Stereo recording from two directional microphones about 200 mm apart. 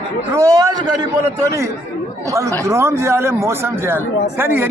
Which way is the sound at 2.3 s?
15° right (ahead or behind).